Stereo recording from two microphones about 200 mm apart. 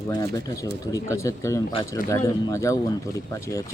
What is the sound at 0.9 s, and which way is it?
Speech, 15° left (ahead or behind).